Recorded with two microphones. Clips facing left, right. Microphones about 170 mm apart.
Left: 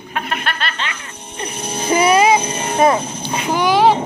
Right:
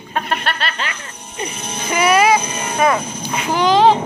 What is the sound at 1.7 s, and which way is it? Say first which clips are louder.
Speech: left 2 dB; 30° left (ahead or behind).